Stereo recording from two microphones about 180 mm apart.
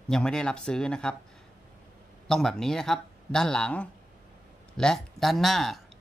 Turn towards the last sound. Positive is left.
turn(degrees=0)  # may be behind; listen again after turning